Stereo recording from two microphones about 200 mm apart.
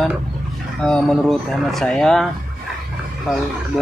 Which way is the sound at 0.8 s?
5° left (ahead or behind).